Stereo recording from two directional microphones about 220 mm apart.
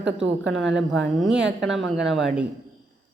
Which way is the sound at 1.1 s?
Centre (ahead or behind).